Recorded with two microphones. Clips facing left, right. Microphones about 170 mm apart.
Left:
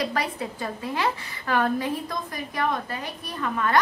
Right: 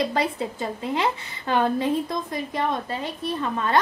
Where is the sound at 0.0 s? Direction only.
25° right (ahead or behind).